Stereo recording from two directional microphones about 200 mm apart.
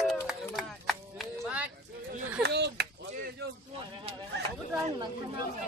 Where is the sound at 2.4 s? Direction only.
55° right (ahead or behind).